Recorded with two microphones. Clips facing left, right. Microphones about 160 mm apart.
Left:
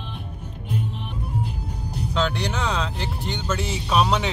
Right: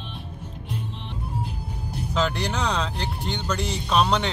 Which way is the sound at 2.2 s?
Centre (ahead or behind).